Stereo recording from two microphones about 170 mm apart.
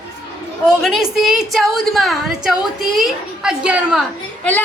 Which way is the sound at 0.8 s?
Centre (ahead or behind).